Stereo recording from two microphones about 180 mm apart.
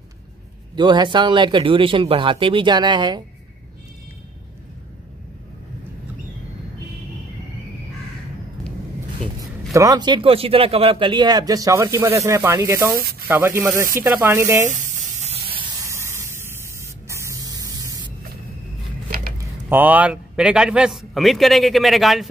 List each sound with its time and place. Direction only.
0.7 s a man's voice: 25° right (ahead or behind)
9.4 s a man's voice: 20° right (ahead or behind)
14.7 s sizzle: 40° right (ahead or behind); by 16.3 s 15° right (ahead or behind)
16.8 s spray: 15° right (ahead or behind)
19.0 s a sound: 55° right (ahead or behind)
19.7 s a man's voice: 10° right (ahead or behind)